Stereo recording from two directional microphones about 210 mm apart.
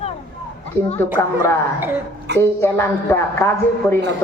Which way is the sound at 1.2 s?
10° left (ahead or behind).